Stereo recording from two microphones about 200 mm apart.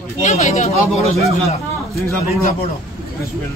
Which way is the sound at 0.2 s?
35° left (ahead or behind).